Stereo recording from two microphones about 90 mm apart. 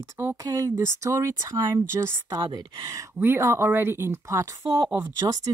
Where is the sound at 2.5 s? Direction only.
40° right (ahead or behind).